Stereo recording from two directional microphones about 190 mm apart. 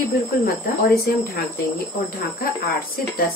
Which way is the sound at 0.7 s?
50° left (ahead or behind).